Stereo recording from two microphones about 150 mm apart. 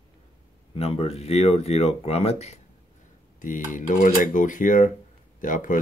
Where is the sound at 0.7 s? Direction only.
45° left (ahead or behind).